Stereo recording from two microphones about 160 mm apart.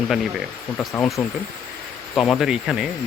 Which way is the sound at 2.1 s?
Centre (ahead or behind).